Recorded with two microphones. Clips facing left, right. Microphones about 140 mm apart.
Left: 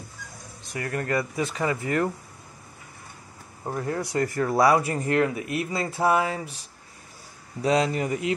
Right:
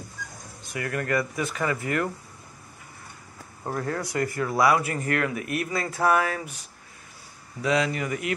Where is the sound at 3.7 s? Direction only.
25° left (ahead or behind).